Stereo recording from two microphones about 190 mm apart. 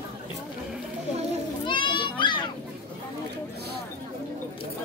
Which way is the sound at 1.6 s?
25° left (ahead or behind).